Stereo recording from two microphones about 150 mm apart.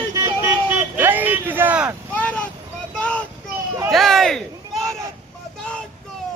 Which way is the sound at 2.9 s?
5° left (ahead or behind).